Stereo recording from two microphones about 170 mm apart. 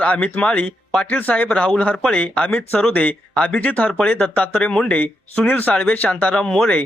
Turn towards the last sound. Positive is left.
turn(degrees=5)  # may be behind; listen again after turning